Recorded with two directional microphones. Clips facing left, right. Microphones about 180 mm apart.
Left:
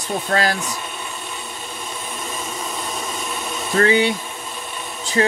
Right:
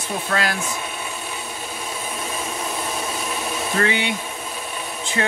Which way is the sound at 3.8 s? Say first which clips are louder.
Left 7 dB; 40° left (ahead or behind).